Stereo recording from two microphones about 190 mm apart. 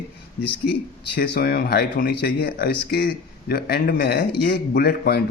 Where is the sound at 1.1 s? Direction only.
60° left (ahead or behind).